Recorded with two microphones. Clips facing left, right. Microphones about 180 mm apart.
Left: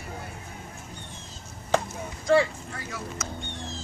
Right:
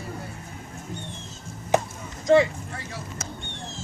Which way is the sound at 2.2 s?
20° right (ahead or behind).